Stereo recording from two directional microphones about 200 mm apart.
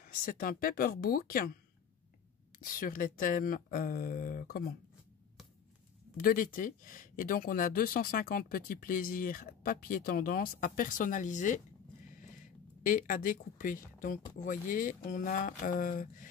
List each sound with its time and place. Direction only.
0.0 s speech: 45° left (ahead or behind)
2.6 s speech: 45° left (ahead or behind)
6.1 s speech: 45° left (ahead or behind)
12.8 s speech: 45° left (ahead or behind)